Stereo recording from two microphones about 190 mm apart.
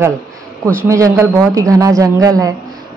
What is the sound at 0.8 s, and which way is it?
Speech, 15° right (ahead or behind).